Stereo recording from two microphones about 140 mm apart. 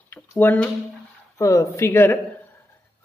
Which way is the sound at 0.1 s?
15° left (ahead or behind).